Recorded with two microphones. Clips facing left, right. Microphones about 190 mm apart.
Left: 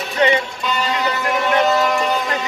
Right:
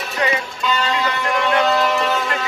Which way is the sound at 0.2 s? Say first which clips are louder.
Left 5 dB; 25° left (ahead or behind).